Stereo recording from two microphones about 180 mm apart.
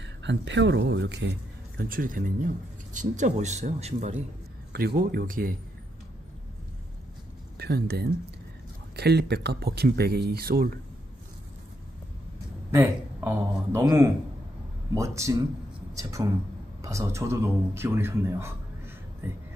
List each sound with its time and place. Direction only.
0.0 s speech: 80° right
1.8 s a man's voice: 50° right (ahead or behind)
4.7 s speech: 60° right (ahead or behind)
7.5 s speech: 65° right (ahead or behind)
12.7 s speech: 15° right (ahead or behind)